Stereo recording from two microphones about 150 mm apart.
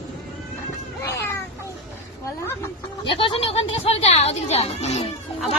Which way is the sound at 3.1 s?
35° left (ahead or behind).